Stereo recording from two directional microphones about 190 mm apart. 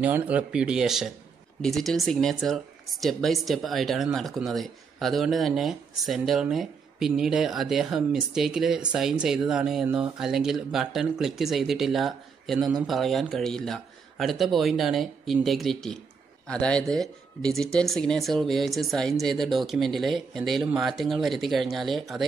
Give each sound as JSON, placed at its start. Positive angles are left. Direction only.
{"t": 0.0, "sound": "speech", "side_deg": -10}